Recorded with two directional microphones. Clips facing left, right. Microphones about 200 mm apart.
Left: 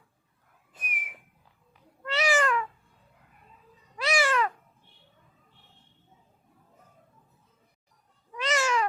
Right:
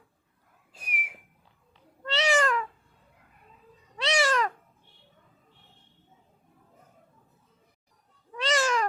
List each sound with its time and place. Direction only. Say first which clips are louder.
0.8 s whistling: right 1 dB; 10° right (ahead or behind)
1.7 s cat: right 1 dB; 30° right (ahead or behind)
3.9 s cat: even; 35° right (ahead or behind)
8.4 s cat: right 1 dB; 30° right (ahead or behind)